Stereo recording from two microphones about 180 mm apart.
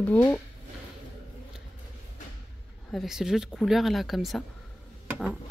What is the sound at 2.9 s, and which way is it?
Speech, centre (ahead or behind).